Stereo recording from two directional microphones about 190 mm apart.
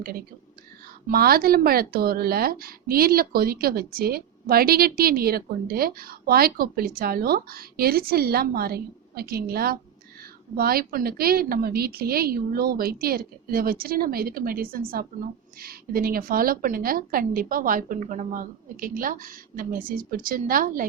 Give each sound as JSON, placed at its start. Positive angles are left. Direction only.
{"t": 1.0, "sound": "a woman's voice", "side_deg": -50}